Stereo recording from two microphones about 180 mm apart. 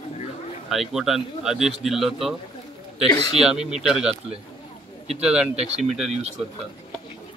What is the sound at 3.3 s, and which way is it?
Speech, 5° right (ahead or behind).